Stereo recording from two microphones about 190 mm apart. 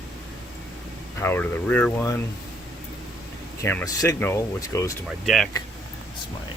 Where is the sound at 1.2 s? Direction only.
10° left (ahead or behind).